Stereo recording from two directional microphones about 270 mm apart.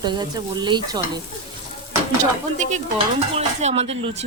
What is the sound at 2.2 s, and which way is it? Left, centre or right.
Speech, right.